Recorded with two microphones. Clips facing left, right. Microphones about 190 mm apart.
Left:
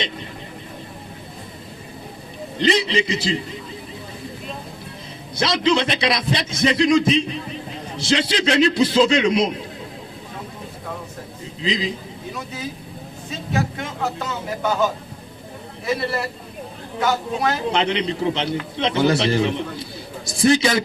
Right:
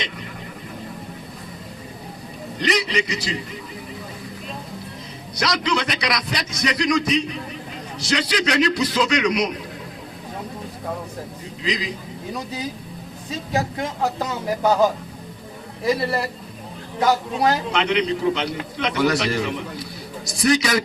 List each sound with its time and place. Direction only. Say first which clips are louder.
2.6 s a man's voice: left 3 dB; 25° left (ahead or behind)
5.4 s a man's voice: left 4 dB; 25° left (ahead or behind)
11.6 s a man's voice: left 3 dB; 25° left (ahead or behind)
13.5 s speech: even; 35° right (ahead or behind)
17.0 s speech: right 2 dB; 35° right (ahead or behind)
17.7 s a man's voice: even; 30° left (ahead or behind)